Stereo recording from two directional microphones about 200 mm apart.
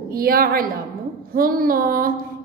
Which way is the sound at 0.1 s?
45° right (ahead or behind).